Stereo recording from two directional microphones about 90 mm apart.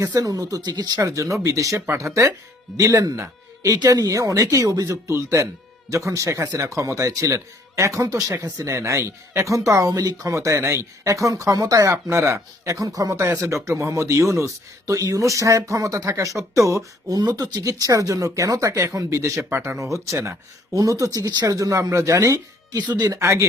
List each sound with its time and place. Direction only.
0.0 s speech: 40° right (ahead or behind)
3.2 s a sound: 35° right (ahead or behind)
3.8 s speech: 45° right (ahead or behind)
17.2 s speech: 45° right (ahead or behind)
22.8 s speech: 50° right (ahead or behind)
23.2 s speech: 30° right (ahead or behind)